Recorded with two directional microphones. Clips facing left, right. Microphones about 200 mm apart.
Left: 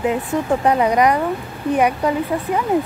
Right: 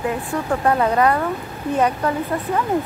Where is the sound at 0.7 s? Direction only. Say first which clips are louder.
Left 1 dB; 15° left (ahead or behind).